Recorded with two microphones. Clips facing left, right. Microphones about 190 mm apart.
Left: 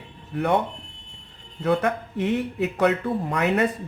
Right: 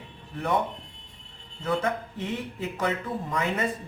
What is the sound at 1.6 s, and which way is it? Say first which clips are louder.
Speech: left 5 dB; 65° left (ahead or behind).